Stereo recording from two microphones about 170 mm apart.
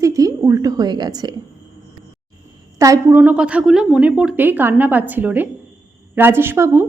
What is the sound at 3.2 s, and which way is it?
A woman's voice, 5° right (ahead or behind).